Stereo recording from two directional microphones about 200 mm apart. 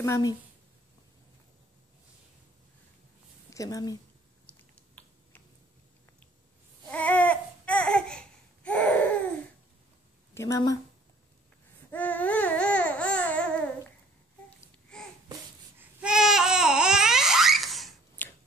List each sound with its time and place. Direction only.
0.0 s speech: 15° left (ahead or behind)
3.4 s speech: 15° left (ahead or behind)
6.9 s babbling: 5° left (ahead or behind)
10.3 s a woman's voice: 15° left (ahead or behind)
11.9 s a sound: 10° left (ahead or behind)
14.6 s babbling: 5° left (ahead or behind)